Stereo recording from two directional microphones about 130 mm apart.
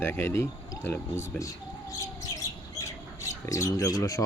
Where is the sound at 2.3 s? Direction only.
25° left (ahead or behind).